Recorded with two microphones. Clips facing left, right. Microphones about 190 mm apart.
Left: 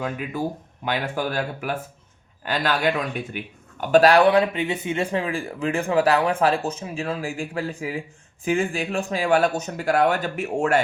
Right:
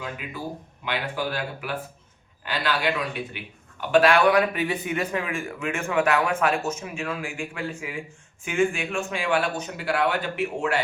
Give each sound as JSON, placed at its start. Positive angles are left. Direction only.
{"t": 0.9, "sound": "speech", "side_deg": 45}